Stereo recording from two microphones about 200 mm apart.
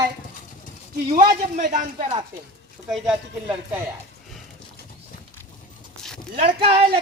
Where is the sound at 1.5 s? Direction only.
40° right (ahead or behind).